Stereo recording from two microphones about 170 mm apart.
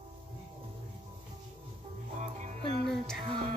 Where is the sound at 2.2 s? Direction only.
40° right (ahead or behind).